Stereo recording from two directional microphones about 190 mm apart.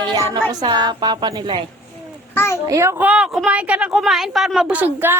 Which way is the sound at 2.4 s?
15° left (ahead or behind).